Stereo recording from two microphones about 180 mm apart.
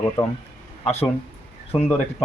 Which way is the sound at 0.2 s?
25° left (ahead or behind).